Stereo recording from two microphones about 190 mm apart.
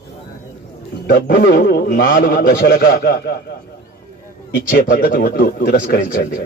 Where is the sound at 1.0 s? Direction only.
55° left (ahead or behind).